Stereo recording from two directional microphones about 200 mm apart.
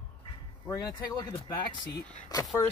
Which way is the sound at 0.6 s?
15° left (ahead or behind).